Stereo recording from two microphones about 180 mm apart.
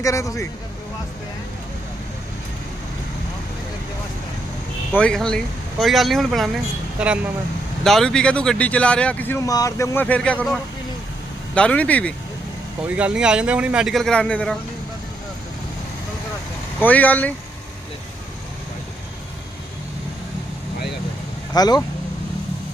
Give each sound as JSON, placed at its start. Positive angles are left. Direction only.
{"t": 0.0, "sound": "speech", "side_deg": 15}
{"t": 4.9, "sound": "a man's voice", "side_deg": 5}
{"t": 11.5, "sound": "speech", "side_deg": 5}
{"t": 13.0, "sound": "a man's voice", "side_deg": -5}
{"t": 16.8, "sound": "speech", "side_deg": 10}
{"t": 21.5, "sound": "speech", "side_deg": 20}